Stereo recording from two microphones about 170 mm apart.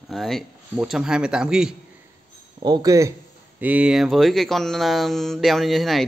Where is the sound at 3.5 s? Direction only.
10° right (ahead or behind).